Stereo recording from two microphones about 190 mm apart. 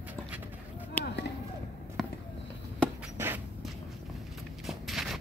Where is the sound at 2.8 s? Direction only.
10° right (ahead or behind).